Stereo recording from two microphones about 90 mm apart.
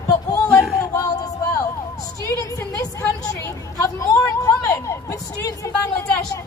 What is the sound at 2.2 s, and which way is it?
A woman's voice, 35° left (ahead or behind).